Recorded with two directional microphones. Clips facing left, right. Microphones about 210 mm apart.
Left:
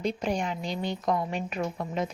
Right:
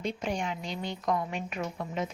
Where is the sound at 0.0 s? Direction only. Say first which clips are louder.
Left 3 dB; 40° left (ahead or behind).